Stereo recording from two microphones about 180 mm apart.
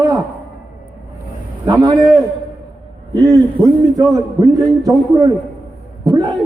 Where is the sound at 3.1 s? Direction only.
20° right (ahead or behind).